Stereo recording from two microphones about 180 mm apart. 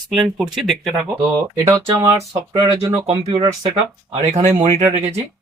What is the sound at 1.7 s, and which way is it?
Speech, 15° right (ahead or behind).